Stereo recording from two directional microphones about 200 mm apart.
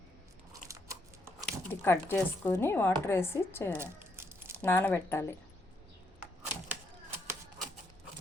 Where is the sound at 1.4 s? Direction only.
10° left (ahead or behind).